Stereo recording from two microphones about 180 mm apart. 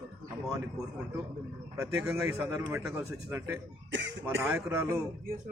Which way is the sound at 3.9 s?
90° right.